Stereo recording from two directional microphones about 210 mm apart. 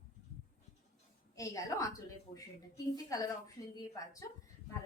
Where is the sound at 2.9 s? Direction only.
15° left (ahead or behind).